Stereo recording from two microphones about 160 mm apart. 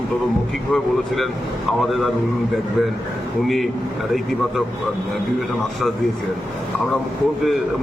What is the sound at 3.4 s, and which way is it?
Speech, centre (ahead or behind).